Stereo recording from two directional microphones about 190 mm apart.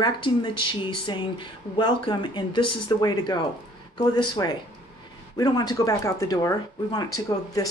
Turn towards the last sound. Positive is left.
turn(degrees=20)  # may be behind; listen again after turning